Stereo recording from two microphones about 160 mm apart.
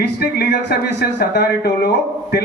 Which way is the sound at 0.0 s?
90° left.